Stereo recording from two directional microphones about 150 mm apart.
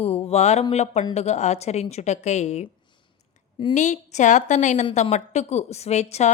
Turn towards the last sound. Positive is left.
turn(degrees=45)  # may be behind; listen again after turning